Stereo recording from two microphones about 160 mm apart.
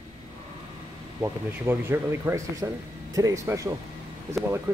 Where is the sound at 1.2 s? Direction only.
15° right (ahead or behind).